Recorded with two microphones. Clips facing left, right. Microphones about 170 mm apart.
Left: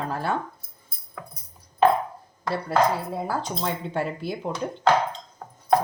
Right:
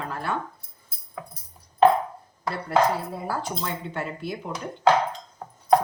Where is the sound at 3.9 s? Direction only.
35° left (ahead or behind).